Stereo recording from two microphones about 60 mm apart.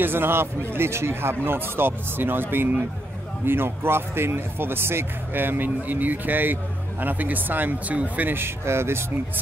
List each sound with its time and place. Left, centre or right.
0.0 s speech: right
8.4 s speech: right